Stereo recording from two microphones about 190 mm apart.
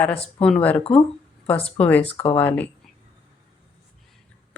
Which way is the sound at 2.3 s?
10° left (ahead or behind).